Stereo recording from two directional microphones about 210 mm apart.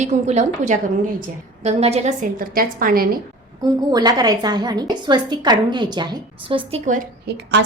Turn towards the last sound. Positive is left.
turn(degrees=-50)  # may be behind; listen again after turning